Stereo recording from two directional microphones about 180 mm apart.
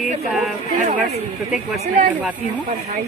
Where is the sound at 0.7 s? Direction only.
45° right (ahead or behind).